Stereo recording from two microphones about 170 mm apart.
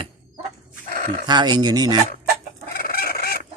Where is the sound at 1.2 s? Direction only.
25° right (ahead or behind).